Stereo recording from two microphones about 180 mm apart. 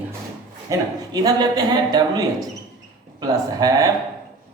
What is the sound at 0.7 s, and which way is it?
Speech, 20° right (ahead or behind).